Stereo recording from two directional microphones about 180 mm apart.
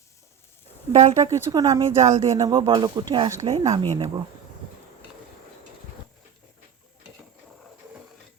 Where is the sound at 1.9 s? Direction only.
40° right (ahead or behind).